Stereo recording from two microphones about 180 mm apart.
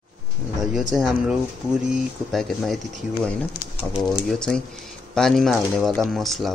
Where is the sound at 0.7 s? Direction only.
Centre (ahead or behind).